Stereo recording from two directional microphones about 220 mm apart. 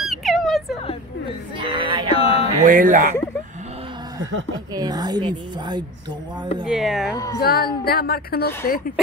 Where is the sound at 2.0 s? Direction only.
25° left (ahead or behind).